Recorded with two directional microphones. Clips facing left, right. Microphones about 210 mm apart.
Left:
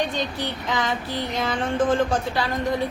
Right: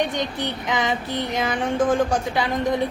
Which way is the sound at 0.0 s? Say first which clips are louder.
Right 2 dB; 20° right (ahead or behind).